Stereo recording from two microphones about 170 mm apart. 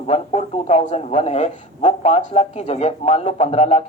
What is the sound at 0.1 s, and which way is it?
A man's voice, 40° left (ahead or behind).